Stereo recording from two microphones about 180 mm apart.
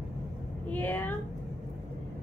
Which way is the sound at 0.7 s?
10° left (ahead or behind).